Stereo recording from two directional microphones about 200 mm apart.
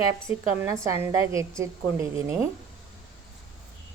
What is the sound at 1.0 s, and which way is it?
A woman's voice, 15° right (ahead or behind).